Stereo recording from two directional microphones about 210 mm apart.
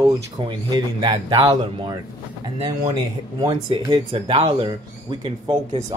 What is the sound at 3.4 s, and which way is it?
Speech, 15° right (ahead or behind).